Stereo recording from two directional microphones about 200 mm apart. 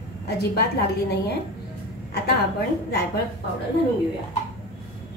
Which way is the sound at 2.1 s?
55° left (ahead or behind).